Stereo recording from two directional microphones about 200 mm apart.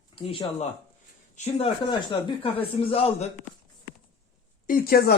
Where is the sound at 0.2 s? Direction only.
25° left (ahead or behind).